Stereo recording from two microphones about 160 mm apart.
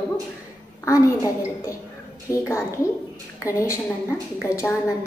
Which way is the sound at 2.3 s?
20° left (ahead or behind).